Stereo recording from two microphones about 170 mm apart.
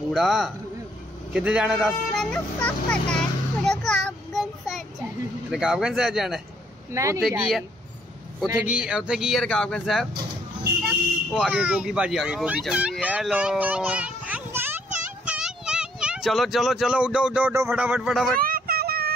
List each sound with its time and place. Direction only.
0.1 s speech: centre (ahead or behind)
3.8 s child singing: centre (ahead or behind)
5.5 s speech: 5° right (ahead or behind)
6.9 s speech: 20° right (ahead or behind)
7.2 s speech: centre (ahead or behind)
18.4 s a sound: 60° right (ahead or behind)